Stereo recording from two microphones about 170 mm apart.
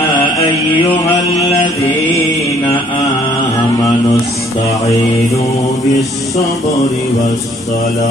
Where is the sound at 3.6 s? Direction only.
20° left (ahead or behind).